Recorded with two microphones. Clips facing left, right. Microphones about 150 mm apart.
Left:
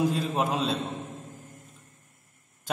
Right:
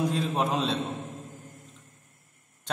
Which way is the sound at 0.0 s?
Centre (ahead or behind).